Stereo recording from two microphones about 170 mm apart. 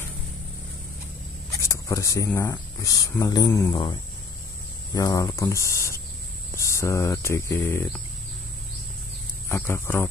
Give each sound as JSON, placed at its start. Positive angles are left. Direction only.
{"t": 1.6, "sound": "speech", "side_deg": 15}
{"t": 9.5, "sound": "speech", "side_deg": 15}